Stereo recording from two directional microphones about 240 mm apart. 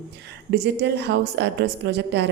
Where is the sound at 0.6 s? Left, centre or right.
Right.